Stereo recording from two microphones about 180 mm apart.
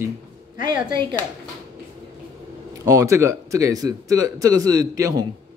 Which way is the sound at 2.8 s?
20° right (ahead or behind).